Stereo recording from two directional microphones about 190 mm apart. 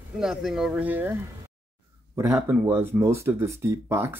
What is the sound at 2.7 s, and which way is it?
Speech, 10° right (ahead or behind).